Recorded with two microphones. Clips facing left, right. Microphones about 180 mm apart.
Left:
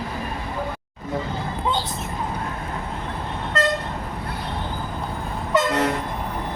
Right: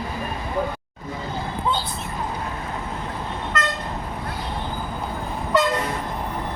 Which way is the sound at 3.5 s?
30° left (ahead or behind).